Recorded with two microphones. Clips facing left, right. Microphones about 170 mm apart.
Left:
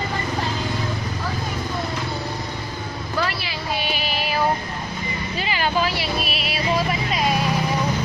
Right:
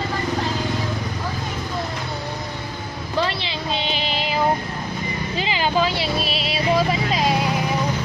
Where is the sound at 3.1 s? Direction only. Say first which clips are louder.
Right 3 dB; 25° right (ahead or behind).